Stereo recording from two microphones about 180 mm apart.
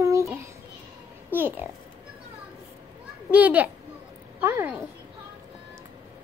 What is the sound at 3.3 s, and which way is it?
A child's voice, 10° right (ahead or behind).